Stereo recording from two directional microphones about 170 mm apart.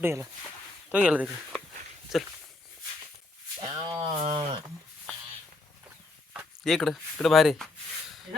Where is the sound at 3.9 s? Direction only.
35° right (ahead or behind).